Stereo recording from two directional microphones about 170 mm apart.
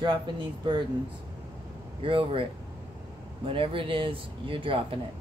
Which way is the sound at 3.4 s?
30° right (ahead or behind).